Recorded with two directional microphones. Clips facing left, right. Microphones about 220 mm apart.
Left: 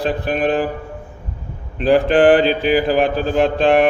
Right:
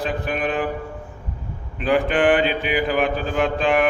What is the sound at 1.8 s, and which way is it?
Mantra, 35° left (ahead or behind).